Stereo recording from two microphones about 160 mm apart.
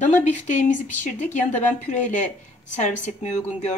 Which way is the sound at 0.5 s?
50° left (ahead or behind).